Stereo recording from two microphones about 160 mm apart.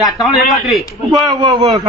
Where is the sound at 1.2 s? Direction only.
20° right (ahead or behind).